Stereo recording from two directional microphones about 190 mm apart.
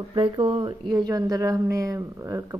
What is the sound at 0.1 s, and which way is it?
Speech, 30° right (ahead or behind).